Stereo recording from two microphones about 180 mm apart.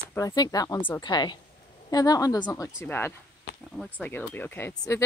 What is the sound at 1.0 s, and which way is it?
Speech, 25° left (ahead or behind).